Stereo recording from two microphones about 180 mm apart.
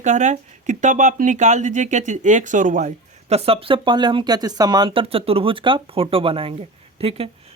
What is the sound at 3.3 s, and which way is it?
Speech, 30° right (ahead or behind).